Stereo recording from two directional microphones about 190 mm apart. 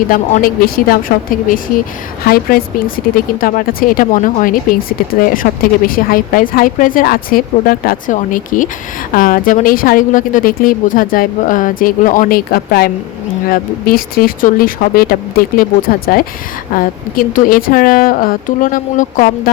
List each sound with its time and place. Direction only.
0.1 s speech: 50° left (ahead or behind)